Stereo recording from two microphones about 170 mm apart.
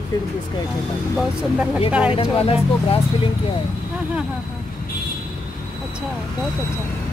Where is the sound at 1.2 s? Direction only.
5° right (ahead or behind).